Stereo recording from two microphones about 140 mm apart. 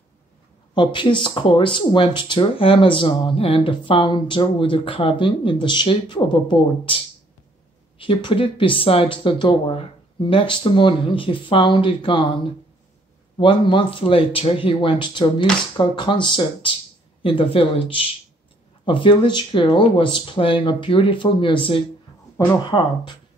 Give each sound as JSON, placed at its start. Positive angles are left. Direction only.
{"t": 0.7, "sound": "speech", "side_deg": 35}
{"t": 8.0, "sound": "speech", "side_deg": 35}
{"t": 13.4, "sound": "speech", "side_deg": 35}